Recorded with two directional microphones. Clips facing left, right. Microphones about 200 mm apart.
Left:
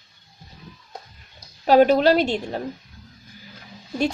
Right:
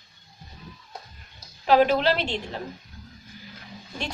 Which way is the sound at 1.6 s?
40° left (ahead or behind).